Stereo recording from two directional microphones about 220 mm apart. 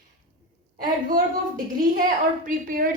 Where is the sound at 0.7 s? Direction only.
40° right (ahead or behind).